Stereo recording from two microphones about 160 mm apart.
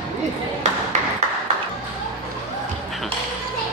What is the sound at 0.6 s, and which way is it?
Ping, 50° right (ahead or behind).